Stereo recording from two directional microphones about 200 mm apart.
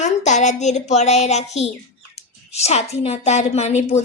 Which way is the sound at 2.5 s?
35° left (ahead or behind).